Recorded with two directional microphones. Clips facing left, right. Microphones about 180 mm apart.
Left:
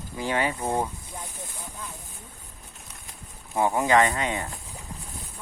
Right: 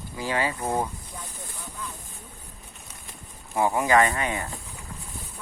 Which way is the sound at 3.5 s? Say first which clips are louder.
Even; 20° left (ahead or behind).